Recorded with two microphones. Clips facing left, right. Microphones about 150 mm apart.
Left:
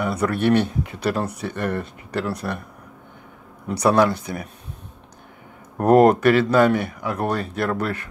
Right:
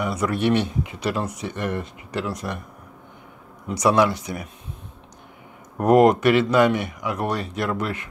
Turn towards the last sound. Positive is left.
turn(degrees=35)  # may be behind; listen again after turning